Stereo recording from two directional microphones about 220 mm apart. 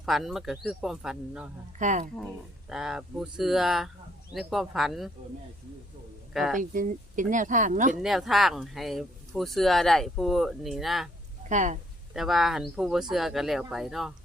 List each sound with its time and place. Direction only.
0.0 s speech: centre (ahead or behind)
1.8 s speech: 35° right (ahead or behind)
2.6 s speech: 5° right (ahead or behind)
6.3 s speech: centre (ahead or behind)
6.6 s speech: 35° right (ahead or behind)
8.0 s speech: centre (ahead or behind)
11.4 s speech: 35° right (ahead or behind)
12.1 s speech: centre (ahead or behind)